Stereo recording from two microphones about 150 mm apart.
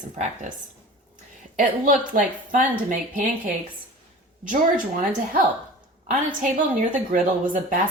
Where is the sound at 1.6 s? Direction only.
60° right (ahead or behind).